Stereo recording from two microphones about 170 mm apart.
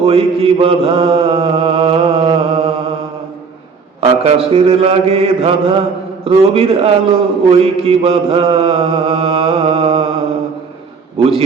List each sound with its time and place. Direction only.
0.0 s mantra: 35° right (ahead or behind)
4.0 s a man's voice: 35° right (ahead or behind)
11.2 s a man's voice: 35° right (ahead or behind)